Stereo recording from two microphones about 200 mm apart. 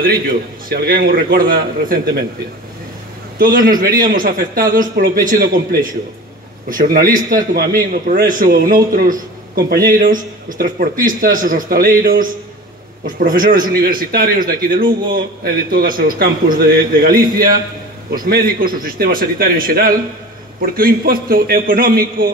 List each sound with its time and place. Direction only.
0.0 s a man's voice: 45° right (ahead or behind)
3.5 s a man's voice: 45° right (ahead or behind)